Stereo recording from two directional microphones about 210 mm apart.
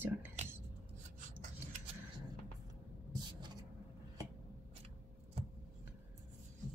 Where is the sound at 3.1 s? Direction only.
20° right (ahead or behind).